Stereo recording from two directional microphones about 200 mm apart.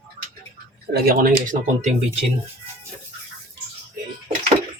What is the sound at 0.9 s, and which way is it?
Speech, 45° right (ahead or behind).